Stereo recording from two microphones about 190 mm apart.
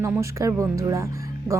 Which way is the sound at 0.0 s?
15° right (ahead or behind).